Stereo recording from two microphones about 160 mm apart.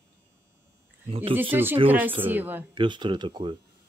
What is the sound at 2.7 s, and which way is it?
Speech, 30° right (ahead or behind).